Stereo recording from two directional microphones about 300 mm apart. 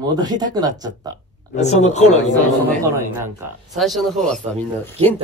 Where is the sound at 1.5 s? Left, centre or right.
Left.